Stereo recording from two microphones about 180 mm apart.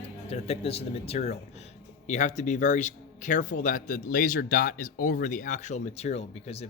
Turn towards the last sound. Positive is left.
turn(degrees=35)  # may be behind; listen again after turning